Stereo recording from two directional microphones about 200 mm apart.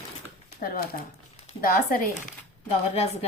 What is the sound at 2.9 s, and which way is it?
Speech, 30° left (ahead or behind).